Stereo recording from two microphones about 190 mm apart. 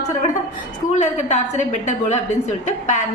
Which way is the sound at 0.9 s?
40° left (ahead or behind).